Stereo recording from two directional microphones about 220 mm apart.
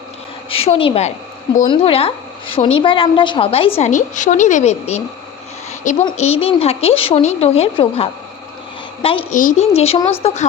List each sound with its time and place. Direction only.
0.5 s a woman's voice: 25° left (ahead or behind)